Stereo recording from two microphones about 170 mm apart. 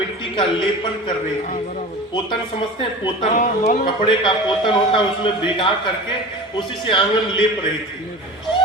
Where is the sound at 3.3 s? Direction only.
50° left (ahead or behind).